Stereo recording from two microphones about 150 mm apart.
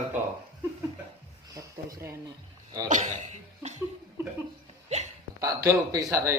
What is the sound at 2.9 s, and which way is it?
Speech, 55° right (ahead or behind).